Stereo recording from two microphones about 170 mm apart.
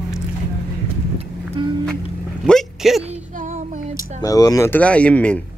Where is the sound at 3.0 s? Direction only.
45° right (ahead or behind).